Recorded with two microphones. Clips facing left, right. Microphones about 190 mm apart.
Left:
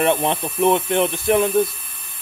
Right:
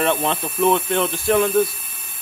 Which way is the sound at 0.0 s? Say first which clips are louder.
Left 2 dB; 20° left (ahead or behind).